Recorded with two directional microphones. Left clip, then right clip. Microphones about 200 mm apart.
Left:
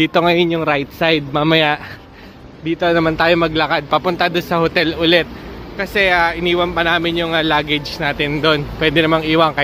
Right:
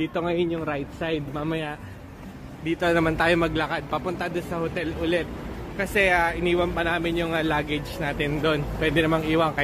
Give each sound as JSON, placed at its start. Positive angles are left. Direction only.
{"t": 0.0, "sound": "speech", "side_deg": 60}
{"t": 2.6, "sound": "a man's voice", "side_deg": 25}
{"t": 5.8, "sound": "speech", "side_deg": 20}